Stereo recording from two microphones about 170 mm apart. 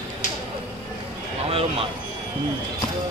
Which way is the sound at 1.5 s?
35° right (ahead or behind).